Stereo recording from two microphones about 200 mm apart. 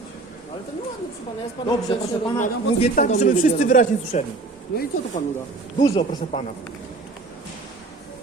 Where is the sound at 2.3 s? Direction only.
40° left (ahead or behind).